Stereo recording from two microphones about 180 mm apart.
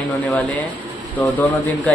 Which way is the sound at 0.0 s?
5° left (ahead or behind).